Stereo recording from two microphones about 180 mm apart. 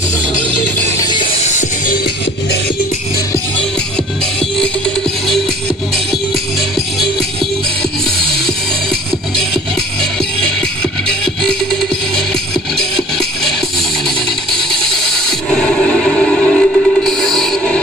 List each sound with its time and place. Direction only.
0.7 s music: 15° left (ahead or behind)
1.4 s music: 40° left (ahead or behind)
14.7 s music: 5° left (ahead or behind)